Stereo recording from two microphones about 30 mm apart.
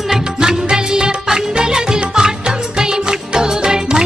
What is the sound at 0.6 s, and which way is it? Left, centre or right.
Music, right.